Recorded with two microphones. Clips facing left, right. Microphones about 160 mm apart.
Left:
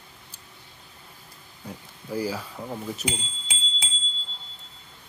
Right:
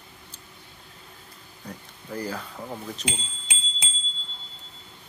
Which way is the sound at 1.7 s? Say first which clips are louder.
Left 3 dB; 10° left (ahead or behind).